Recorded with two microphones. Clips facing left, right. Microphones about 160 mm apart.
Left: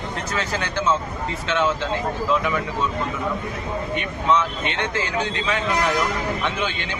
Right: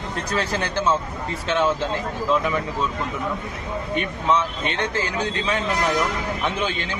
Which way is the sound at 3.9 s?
35° right (ahead or behind).